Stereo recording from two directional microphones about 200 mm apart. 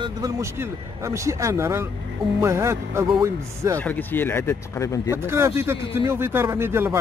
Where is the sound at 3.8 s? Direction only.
10° left (ahead or behind).